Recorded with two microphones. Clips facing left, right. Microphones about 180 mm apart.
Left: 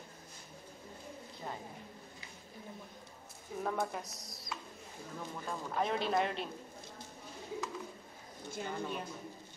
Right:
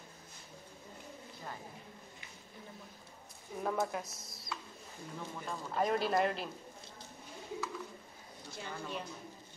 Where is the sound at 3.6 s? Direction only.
Centre (ahead or behind).